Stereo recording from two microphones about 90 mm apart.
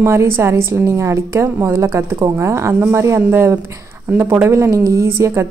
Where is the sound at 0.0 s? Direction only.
30° right (ahead or behind).